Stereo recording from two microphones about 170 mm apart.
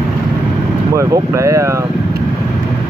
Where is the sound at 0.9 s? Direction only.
20° right (ahead or behind).